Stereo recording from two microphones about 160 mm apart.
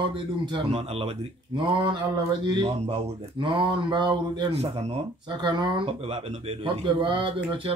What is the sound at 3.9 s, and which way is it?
Speech, 30° right (ahead or behind).